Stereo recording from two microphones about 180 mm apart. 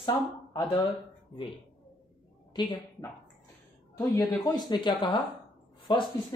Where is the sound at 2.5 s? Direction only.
25° left (ahead or behind).